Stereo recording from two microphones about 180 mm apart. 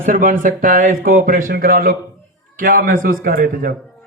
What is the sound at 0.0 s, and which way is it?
A man's voice, 45° right (ahead or behind).